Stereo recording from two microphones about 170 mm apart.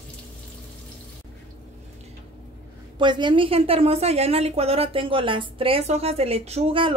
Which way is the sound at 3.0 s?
25° right (ahead or behind).